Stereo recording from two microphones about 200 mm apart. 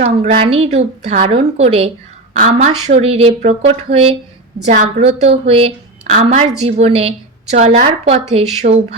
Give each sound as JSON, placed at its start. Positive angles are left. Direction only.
{"t": 0.0, "sound": "a woman's voice", "side_deg": -30}
{"t": 8.6, "sound": "speech", "side_deg": -45}